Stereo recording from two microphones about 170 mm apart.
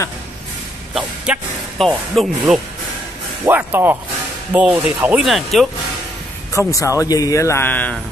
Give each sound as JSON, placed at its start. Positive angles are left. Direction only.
{"t": 0.9, "sound": "speech", "side_deg": -5}
{"t": 3.4, "sound": "speech", "side_deg": -10}
{"t": 6.6, "sound": "a man's voice", "side_deg": 15}